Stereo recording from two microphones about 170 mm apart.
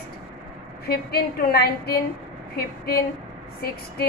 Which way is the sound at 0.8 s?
65° left (ahead or behind).